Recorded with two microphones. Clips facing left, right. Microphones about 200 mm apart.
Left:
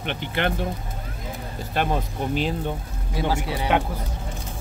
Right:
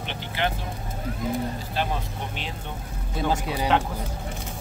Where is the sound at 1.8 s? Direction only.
55° left (ahead or behind).